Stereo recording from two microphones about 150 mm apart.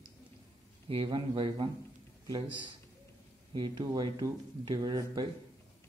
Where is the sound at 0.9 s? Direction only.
35° right (ahead or behind).